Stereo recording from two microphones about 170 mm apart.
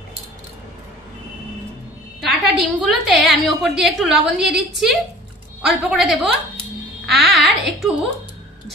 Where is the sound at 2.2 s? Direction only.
Centre (ahead or behind).